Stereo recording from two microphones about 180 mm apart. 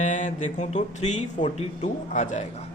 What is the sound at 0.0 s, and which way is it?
Speech, 45° left (ahead or behind).